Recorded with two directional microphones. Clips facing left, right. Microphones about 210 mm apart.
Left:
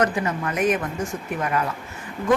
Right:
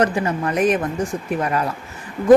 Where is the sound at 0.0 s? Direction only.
30° right (ahead or behind).